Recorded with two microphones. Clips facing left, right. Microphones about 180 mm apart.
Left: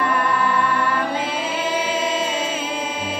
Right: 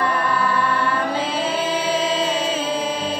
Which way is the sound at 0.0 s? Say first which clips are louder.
Even; 35° right (ahead or behind).